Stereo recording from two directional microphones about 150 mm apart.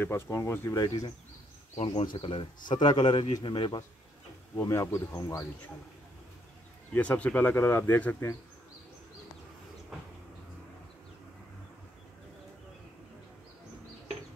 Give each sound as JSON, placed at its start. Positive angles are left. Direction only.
{"t": 0.0, "sound": "speech", "side_deg": 15}
{"t": 2.1, "sound": "a man's voice", "side_deg": 35}
{"t": 4.6, "sound": "speech", "side_deg": 20}
{"t": 6.9, "sound": "speech", "side_deg": 10}